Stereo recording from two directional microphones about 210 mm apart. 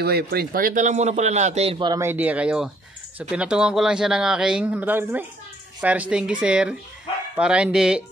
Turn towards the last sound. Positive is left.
turn(degrees=-5)  # may be behind; listen again after turning